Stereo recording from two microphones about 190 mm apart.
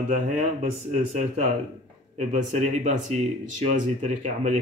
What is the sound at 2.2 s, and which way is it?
A man's voice, 40° right (ahead or behind).